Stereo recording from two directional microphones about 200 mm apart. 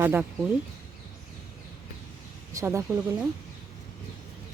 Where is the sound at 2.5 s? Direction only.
15° right (ahead or behind).